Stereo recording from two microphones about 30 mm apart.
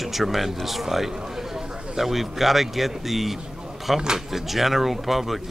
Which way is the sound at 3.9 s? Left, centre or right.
Centre.